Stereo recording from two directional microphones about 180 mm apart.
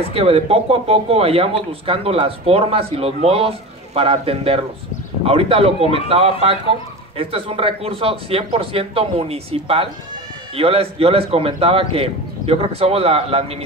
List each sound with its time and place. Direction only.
0.1 s speech: 30° right (ahead or behind)